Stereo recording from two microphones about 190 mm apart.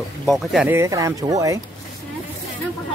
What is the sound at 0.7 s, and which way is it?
Speech, 15° right (ahead or behind).